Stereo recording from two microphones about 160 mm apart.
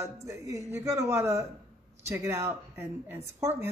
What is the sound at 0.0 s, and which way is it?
Speech, 20° right (ahead or behind).